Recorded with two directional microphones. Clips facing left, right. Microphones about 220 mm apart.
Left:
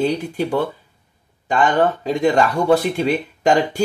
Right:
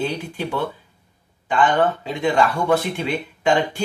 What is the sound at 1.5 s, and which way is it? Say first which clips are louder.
Speech: left 2 dB; 40° left (ahead or behind).